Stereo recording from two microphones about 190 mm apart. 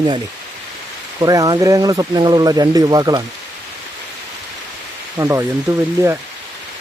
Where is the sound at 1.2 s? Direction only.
20° right (ahead or behind).